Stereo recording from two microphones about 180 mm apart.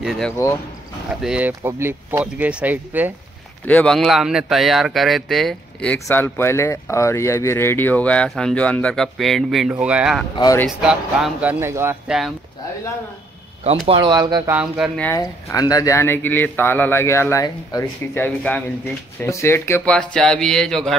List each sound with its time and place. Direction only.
0.0 s speech: centre (ahead or behind)
3.6 s speech: 5° left (ahead or behind)
10.3 s speech: 20° left (ahead or behind)
10.8 s speech: 5° right (ahead or behind)
12.1 s speech: 5° right (ahead or behind)
13.8 s speech: 25° right (ahead or behind)
14.5 s speech: 5° right (ahead or behind)
15.1 s speech: 20° left (ahead or behind); by 20.9 s 5° left (ahead or behind)